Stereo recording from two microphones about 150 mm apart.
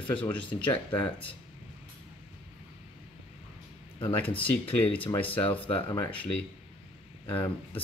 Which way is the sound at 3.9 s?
35° left (ahead or behind).